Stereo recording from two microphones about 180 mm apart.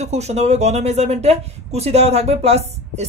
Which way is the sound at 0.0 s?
40° right (ahead or behind).